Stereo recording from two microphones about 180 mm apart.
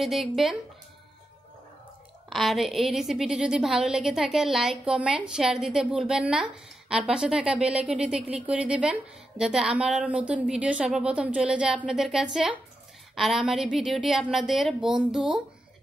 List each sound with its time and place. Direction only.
0.0 s a woman's voice: centre (ahead or behind)
2.2 s a woman's voice: centre (ahead or behind)